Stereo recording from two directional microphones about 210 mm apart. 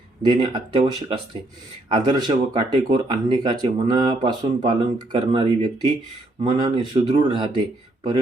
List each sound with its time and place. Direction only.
0.2 s speech: 20° right (ahead or behind)